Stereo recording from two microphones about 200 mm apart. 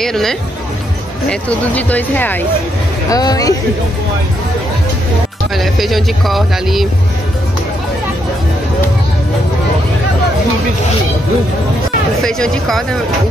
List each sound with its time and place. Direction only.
0.0 s speech: centre (ahead or behind); by 3.5 s 20° left (ahead or behind)
5.6 s speech: centre (ahead or behind)
12.2 s speech: 5° left (ahead or behind)